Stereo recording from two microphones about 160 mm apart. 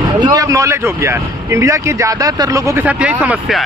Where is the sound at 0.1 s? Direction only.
25° right (ahead or behind).